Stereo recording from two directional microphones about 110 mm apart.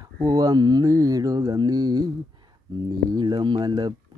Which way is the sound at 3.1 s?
40° right (ahead or behind).